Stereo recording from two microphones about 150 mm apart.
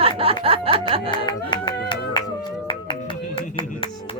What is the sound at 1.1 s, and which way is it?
Speech, 30° left (ahead or behind).